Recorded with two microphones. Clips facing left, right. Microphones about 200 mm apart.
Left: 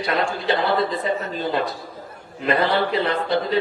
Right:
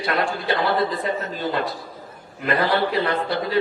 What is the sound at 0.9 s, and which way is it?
Speech, centre (ahead or behind).